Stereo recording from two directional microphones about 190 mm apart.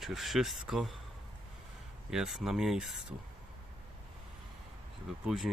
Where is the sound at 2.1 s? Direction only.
Centre (ahead or behind).